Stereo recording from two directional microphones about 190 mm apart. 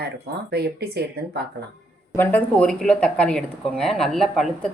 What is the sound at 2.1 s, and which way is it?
Speech, 10° left (ahead or behind).